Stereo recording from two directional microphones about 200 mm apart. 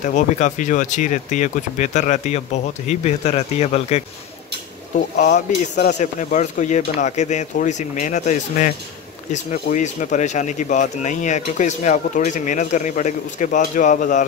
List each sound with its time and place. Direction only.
0.0 s speech: 40° left (ahead or behind)
5.1 s speech: 40° left (ahead or behind)